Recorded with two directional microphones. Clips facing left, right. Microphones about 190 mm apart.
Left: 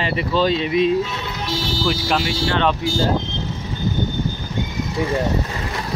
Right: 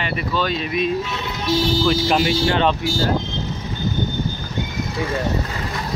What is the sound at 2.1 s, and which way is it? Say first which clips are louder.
Speech: right 3 dB; 10° right (ahead or behind).